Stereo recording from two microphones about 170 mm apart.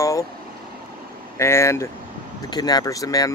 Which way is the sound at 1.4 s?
15° left (ahead or behind).